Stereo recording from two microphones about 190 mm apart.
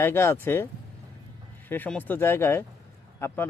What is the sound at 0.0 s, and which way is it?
Speech, 15° left (ahead or behind).